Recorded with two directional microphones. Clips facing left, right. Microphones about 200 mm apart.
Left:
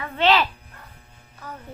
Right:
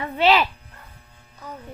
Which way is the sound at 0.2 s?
10° right (ahead or behind).